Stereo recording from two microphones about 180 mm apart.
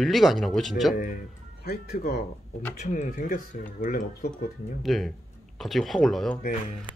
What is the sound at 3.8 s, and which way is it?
Speech, 45° left (ahead or behind).